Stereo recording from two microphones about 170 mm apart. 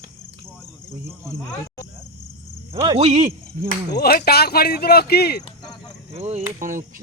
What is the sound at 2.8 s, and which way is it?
Speech, 35° right (ahead or behind).